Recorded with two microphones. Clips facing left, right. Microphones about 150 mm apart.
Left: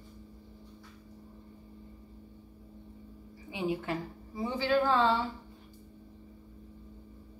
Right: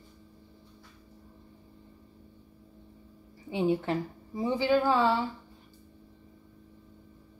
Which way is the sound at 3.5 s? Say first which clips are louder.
Right 6 dB; 30° right (ahead or behind).